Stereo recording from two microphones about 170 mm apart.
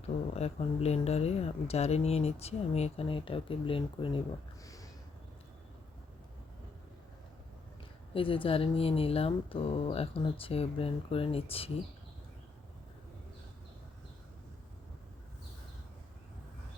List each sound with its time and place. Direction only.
0.3 s speech: 40° left (ahead or behind)
4.6 s a sound: 20° left (ahead or behind)
8.1 s speech: 30° left (ahead or behind)